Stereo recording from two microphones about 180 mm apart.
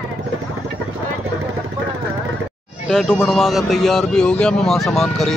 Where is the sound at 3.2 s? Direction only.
Centre (ahead or behind).